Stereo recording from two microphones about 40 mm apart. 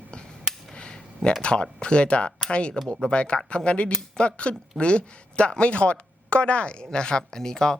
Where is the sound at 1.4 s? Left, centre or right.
Left.